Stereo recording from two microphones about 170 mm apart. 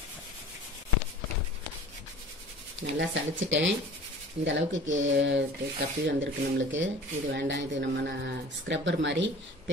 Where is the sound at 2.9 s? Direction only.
90° right.